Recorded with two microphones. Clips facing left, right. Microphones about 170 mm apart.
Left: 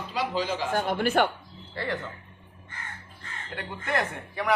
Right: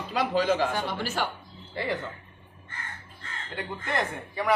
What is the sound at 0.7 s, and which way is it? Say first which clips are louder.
Speech: left 5 dB; 50° left (ahead or behind).